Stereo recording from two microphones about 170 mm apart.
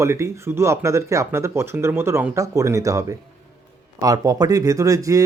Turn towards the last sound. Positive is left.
turn(degrees=-20)  # may be behind; listen again after turning